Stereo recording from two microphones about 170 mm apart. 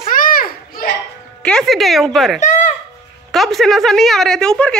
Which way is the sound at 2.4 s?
45° left (ahead or behind).